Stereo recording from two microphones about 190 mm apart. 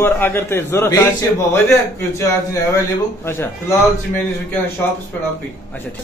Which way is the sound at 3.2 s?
10° left (ahead or behind).